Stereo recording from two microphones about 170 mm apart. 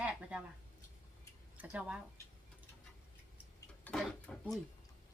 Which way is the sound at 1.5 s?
10° right (ahead or behind).